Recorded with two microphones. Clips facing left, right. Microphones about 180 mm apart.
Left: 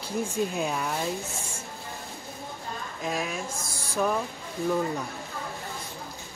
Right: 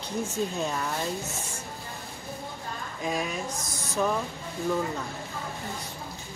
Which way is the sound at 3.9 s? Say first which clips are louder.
Even; 5° left (ahead or behind).